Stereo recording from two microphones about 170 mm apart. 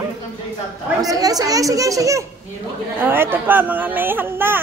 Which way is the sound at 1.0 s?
20° right (ahead or behind).